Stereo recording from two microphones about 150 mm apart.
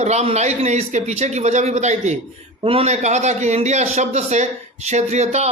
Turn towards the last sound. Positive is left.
turn(degrees=-50)  # may be behind; listen again after turning